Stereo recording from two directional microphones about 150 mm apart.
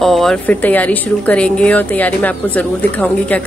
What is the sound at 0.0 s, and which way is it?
Speech, centre (ahead or behind).